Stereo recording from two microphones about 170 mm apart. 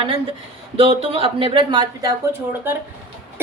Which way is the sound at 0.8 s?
35° right (ahead or behind).